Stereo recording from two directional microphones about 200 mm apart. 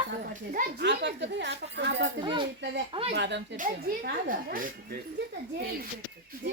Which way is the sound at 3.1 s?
60° right (ahead or behind).